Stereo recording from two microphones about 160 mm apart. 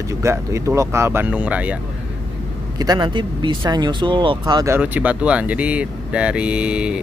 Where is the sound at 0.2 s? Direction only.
20° right (ahead or behind).